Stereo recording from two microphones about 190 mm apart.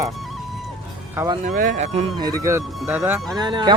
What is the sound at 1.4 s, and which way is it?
Speech, 45° right (ahead or behind).